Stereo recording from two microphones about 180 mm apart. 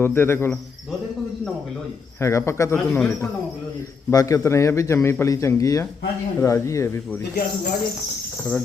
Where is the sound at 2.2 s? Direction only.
15° left (ahead or behind).